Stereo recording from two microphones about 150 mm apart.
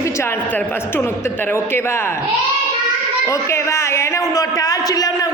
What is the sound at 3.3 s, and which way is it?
A man's voice, 20° left (ahead or behind).